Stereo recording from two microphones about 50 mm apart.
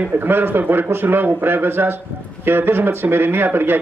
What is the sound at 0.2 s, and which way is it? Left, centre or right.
Speech, right.